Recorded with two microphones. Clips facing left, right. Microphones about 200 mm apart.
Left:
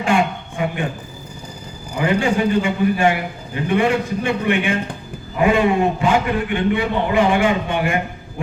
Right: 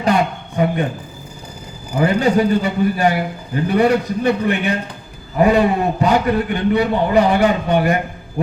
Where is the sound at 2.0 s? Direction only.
40° right (ahead or behind).